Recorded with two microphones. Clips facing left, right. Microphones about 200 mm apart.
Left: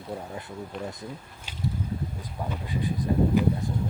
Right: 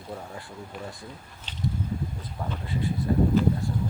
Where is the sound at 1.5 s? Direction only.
10° left (ahead or behind).